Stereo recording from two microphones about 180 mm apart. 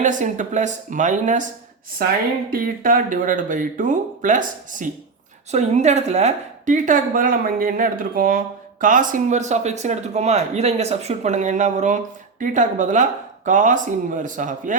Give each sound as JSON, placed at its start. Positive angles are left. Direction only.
{"t": 0.0, "sound": "a woman's voice", "side_deg": -45}
{"t": 2.5, "sound": "a woman's voice", "side_deg": -50}